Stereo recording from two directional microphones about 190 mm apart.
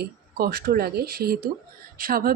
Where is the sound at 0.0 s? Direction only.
55° right (ahead or behind).